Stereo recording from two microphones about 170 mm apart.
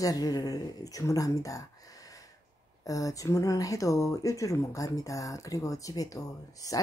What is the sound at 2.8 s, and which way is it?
Speech, 20° left (ahead or behind).